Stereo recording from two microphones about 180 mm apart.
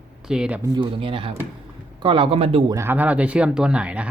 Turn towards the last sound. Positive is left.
turn(degrees=-5)  # may be behind; listen again after turning